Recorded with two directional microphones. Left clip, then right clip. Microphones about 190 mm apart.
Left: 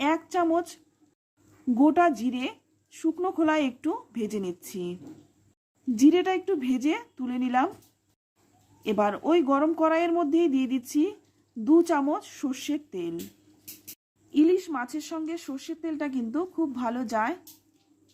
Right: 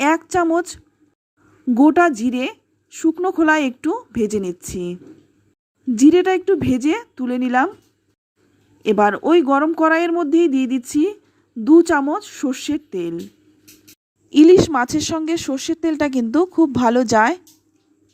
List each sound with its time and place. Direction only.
0.0 s a sound: 30° right (ahead or behind)
0.5 s a woman's voice: 25° right (ahead or behind)
8.8 s a woman's voice: 25° right (ahead or behind)
14.3 s a woman's voice: 40° right (ahead or behind)